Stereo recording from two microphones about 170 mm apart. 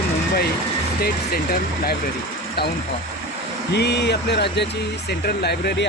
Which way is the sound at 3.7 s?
80° left.